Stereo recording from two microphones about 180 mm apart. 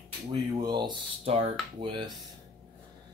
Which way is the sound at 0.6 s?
25° right (ahead or behind).